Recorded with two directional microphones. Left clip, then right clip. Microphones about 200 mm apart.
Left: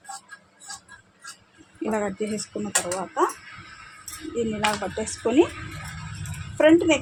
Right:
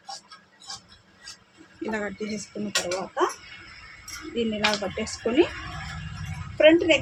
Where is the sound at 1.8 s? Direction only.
35° left (ahead or behind).